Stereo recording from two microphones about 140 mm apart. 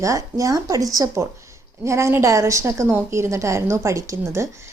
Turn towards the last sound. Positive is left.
turn(degrees=-20)  # may be behind; listen again after turning